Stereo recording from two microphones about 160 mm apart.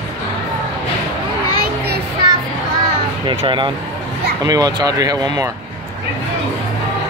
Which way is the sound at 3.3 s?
30° right (ahead or behind).